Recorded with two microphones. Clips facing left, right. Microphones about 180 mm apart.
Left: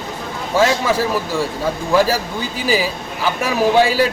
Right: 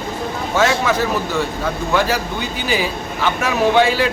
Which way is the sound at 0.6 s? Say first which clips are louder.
Left 1 dB; 30° left (ahead or behind).